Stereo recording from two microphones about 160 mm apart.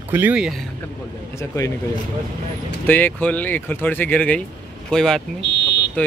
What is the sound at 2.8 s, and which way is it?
Speech, 10° left (ahead or behind).